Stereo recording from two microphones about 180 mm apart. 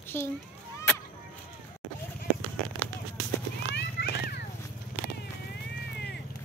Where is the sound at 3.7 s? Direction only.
70° left (ahead or behind).